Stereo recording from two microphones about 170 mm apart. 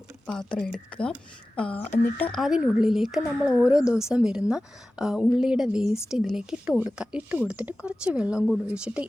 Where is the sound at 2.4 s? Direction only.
5° right (ahead or behind).